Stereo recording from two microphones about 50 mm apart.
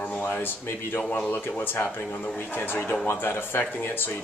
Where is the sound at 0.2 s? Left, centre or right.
Left.